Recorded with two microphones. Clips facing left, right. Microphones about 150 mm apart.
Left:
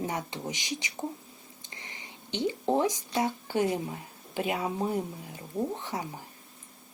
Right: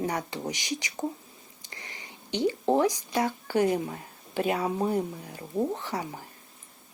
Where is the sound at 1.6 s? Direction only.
20° left (ahead or behind).